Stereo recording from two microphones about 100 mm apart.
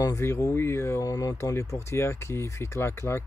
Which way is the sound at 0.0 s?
30° left (ahead or behind).